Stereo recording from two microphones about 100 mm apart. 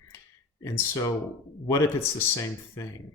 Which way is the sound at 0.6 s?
30° left (ahead or behind).